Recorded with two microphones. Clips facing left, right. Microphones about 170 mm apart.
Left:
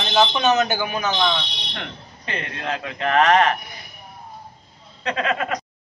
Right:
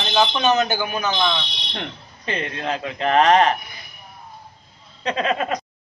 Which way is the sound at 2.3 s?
20° right (ahead or behind).